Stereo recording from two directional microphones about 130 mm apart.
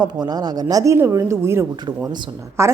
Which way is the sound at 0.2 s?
30° right (ahead or behind).